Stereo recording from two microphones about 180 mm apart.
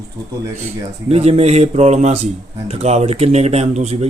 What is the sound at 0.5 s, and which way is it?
Speech, 40° right (ahead or behind).